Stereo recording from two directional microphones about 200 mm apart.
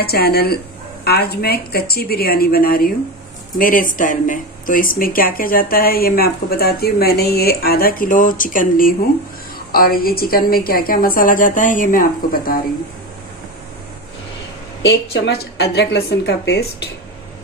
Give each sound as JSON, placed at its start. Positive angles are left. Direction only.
{"t": 0.0, "sound": "speech", "side_deg": 50}
{"t": 14.8, "sound": "a woman's voice", "side_deg": 60}